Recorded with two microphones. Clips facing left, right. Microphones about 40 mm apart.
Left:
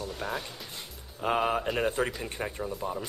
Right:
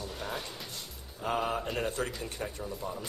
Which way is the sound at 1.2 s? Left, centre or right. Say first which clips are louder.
Left 4 dB; left.